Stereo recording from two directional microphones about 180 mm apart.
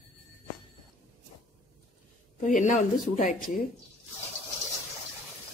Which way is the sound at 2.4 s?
45° left (ahead or behind).